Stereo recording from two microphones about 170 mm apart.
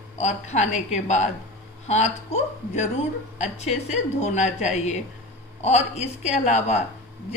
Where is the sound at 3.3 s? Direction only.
45° left (ahead or behind).